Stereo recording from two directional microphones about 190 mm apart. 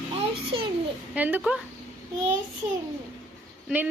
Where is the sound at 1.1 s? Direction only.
10° right (ahead or behind).